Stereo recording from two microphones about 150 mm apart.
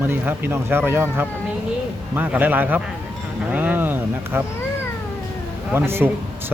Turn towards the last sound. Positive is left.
turn(degrees=-15)  # may be behind; listen again after turning